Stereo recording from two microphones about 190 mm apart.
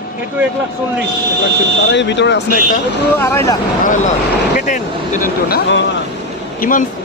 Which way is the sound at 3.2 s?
15° left (ahead or behind).